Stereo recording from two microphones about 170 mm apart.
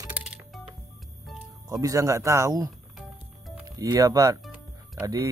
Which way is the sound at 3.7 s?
20° right (ahead or behind).